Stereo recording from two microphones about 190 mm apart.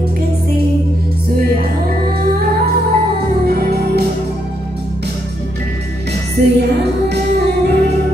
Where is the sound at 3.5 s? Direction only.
55° right (ahead or behind).